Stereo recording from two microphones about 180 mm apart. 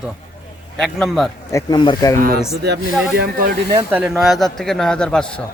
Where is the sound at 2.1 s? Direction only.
55° right (ahead or behind).